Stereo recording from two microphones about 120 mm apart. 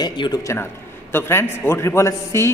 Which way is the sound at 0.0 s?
35° left (ahead or behind).